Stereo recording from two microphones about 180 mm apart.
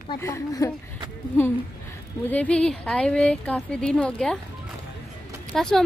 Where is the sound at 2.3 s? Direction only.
5° left (ahead or behind).